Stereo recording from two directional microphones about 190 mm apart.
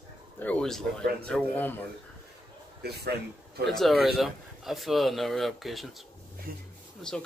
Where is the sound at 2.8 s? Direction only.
60° right (ahead or behind).